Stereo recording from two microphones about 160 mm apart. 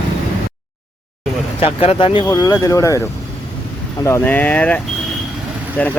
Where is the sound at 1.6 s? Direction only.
35° left (ahead or behind); by 3.0 s 20° left (ahead or behind).